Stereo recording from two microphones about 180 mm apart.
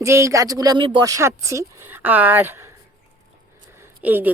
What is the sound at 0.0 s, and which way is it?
Speech, 15° right (ahead or behind).